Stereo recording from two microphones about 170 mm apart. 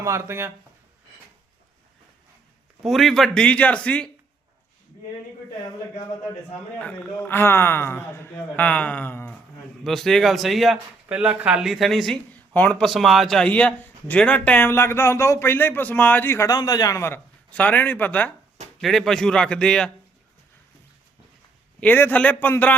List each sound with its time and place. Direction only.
0.0 s speech: 15° right (ahead or behind)
2.8 s a man's voice: centre (ahead or behind)
6.7 s a man's voice: 10° left (ahead or behind)
21.8 s a man's voice: 10° left (ahead or behind)